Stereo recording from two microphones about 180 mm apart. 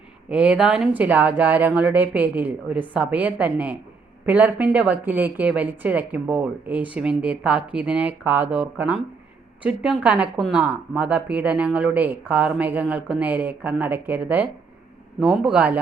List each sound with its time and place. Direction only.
0.3 s a woman's voice: 5° right (ahead or behind)